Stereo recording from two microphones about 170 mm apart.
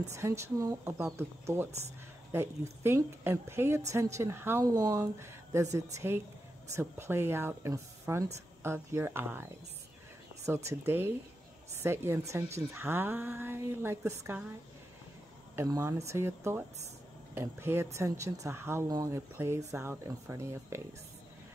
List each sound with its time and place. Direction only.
0.1 s a woman's voice: 15° right (ahead or behind)
15.5 s a woman's voice: 15° right (ahead or behind)